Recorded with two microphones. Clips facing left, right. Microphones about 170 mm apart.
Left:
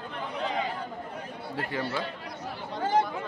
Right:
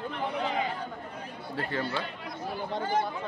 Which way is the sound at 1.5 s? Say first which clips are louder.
Even; 10° left (ahead or behind).